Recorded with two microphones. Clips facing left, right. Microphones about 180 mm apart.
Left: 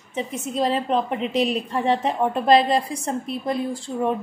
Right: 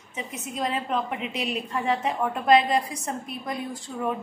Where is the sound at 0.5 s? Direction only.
30° left (ahead or behind).